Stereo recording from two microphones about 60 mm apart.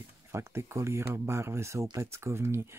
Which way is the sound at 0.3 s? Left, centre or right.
Right.